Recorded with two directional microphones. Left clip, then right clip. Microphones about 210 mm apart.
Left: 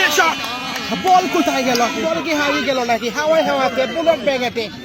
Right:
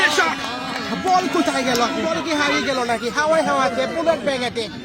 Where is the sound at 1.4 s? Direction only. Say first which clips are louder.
Left 3 dB; 35° left (ahead or behind).